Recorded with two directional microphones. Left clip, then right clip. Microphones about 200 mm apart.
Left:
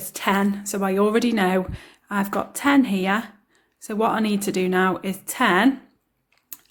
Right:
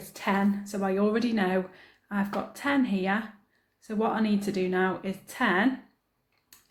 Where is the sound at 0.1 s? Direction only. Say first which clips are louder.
Left 6 dB; 45° left (ahead or behind).